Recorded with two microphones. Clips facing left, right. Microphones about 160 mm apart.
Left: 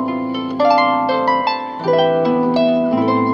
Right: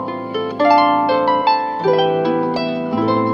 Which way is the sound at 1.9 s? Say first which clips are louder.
Left 3 dB; centre (ahead or behind).